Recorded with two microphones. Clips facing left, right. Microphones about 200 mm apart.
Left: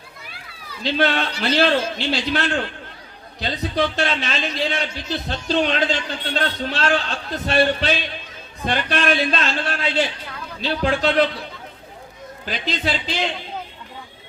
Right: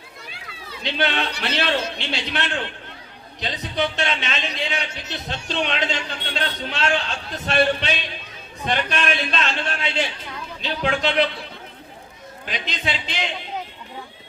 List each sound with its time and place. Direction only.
0.8 s a man's voice: 35° left (ahead or behind)
12.5 s a man's voice: 35° left (ahead or behind)